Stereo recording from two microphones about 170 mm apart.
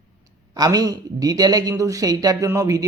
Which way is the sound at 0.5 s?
20° right (ahead or behind).